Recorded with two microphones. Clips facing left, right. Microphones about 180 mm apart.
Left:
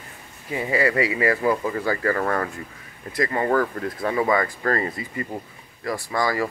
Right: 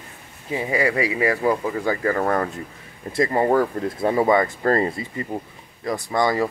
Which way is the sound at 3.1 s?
30° right (ahead or behind).